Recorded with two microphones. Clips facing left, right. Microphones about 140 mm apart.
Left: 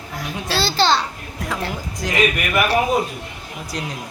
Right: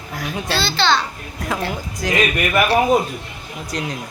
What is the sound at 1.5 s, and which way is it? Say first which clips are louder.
Speech: right 3 dB; centre (ahead or behind).